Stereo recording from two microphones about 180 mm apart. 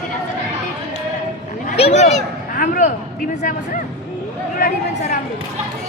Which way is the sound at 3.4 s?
45° left (ahead or behind).